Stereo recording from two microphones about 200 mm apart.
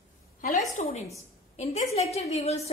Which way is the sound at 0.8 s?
30° left (ahead or behind).